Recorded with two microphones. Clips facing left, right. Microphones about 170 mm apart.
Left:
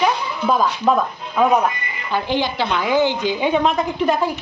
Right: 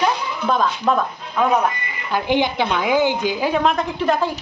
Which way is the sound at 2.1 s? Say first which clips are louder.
Right 2 dB; 15° right (ahead or behind).